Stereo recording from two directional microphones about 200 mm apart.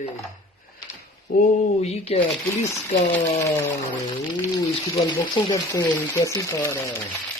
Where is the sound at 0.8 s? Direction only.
20° left (ahead or behind).